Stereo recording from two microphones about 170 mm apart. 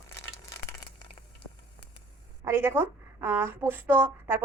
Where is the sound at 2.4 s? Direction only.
15° right (ahead or behind).